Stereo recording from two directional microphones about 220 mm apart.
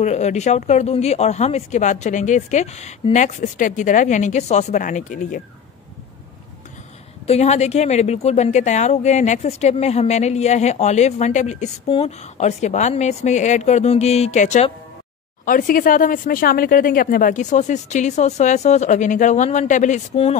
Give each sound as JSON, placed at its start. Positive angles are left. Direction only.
{"t": 0.0, "sound": "speech", "side_deg": 30}
{"t": 7.2, "sound": "speech", "side_deg": 30}